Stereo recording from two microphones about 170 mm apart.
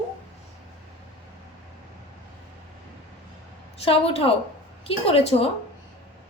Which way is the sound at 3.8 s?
35° left (ahead or behind).